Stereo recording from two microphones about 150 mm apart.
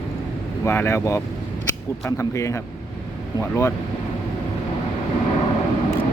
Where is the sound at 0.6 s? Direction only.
20° left (ahead or behind).